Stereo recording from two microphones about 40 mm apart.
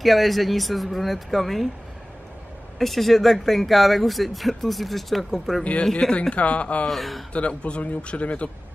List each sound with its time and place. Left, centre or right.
0.0 s speech: centre
2.8 s speech: centre
5.6 s speech: left
5.9 s speech: centre
6.3 s speech: left
6.9 s speech: centre
7.3 s speech: left